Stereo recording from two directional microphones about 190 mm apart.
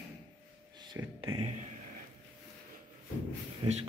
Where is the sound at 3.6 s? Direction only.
30° right (ahead or behind).